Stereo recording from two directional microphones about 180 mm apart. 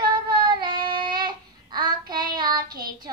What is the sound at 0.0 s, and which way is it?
Child singing, 25° right (ahead or behind).